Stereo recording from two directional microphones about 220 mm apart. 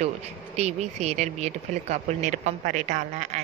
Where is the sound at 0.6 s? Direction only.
30° right (ahead or behind).